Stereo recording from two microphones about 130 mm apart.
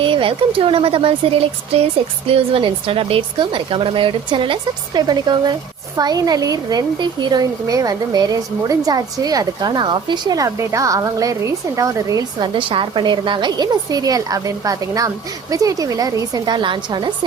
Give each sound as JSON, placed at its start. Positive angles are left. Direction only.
{"t": 0.0, "sound": "a woman's voice", "side_deg": -40}
{"t": 12.5, "sound": "a woman's voice", "side_deg": -40}